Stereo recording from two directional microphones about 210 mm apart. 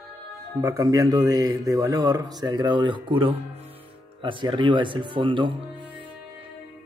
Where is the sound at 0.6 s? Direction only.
15° right (ahead or behind).